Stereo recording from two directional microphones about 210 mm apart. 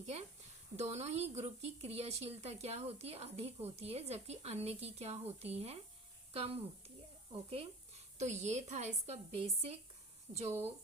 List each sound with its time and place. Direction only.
0.0 s speech: 30° right (ahead or behind)